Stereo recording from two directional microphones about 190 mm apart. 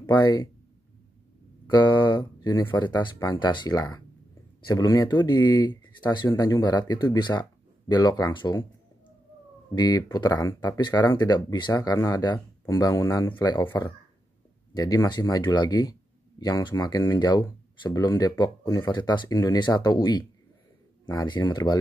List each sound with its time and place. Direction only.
0.1 s speech: 20° left (ahead or behind)
1.7 s speech: 20° left (ahead or behind)
9.8 s speech: 20° left (ahead or behind)